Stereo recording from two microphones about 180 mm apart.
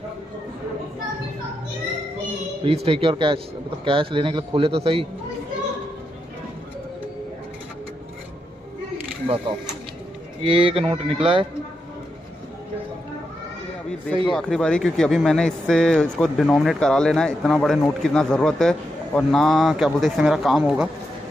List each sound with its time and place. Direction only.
2.6 s a man's voice: 30° right (ahead or behind)
10.4 s a man's voice: 30° right (ahead or behind)
14.2 s a man's voice: 5° left (ahead or behind)